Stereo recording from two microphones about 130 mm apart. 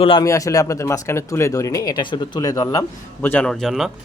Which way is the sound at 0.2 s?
25° left (ahead or behind).